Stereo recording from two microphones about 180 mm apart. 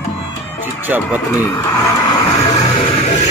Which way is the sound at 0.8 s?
10° right (ahead or behind).